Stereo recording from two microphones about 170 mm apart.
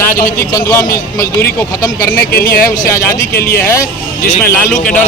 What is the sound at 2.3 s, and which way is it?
Speech, 55° left (ahead or behind).